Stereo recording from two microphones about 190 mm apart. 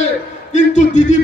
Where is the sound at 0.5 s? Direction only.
40° left (ahead or behind).